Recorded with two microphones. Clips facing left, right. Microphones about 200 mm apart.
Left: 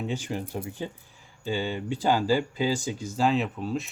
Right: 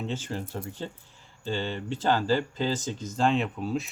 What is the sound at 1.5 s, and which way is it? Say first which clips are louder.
Speech: left 2 dB; 10° left (ahead or behind).